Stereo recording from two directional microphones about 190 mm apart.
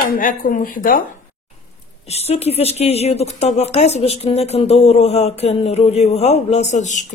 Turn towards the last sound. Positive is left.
turn(degrees=40)  # may be behind; listen again after turning